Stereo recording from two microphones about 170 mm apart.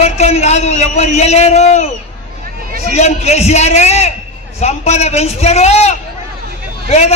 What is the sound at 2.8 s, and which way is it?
A man's voice, 40° left (ahead or behind).